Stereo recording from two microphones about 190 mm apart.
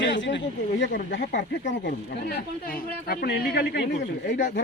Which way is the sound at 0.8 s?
65° left (ahead or behind).